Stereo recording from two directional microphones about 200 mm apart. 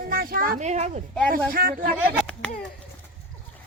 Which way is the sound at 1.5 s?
45° right (ahead or behind).